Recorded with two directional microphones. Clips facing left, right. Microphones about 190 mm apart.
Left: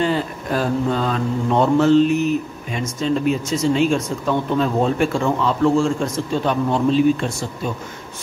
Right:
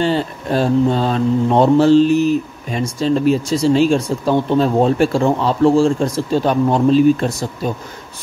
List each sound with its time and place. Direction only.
0.0 s mantra: 30° right (ahead or behind)